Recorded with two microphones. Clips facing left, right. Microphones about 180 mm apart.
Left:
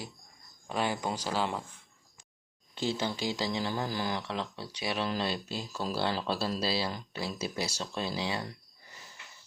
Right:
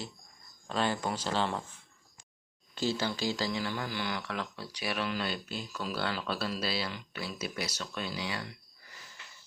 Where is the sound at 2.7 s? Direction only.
20° left (ahead or behind).